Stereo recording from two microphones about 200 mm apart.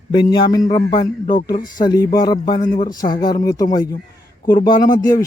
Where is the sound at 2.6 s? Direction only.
40° left (ahead or behind).